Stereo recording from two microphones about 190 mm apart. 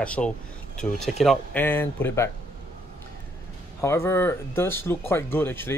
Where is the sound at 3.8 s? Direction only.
15° left (ahead or behind).